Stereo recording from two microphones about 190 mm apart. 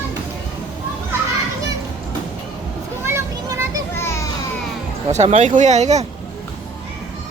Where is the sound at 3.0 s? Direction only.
15° right (ahead or behind).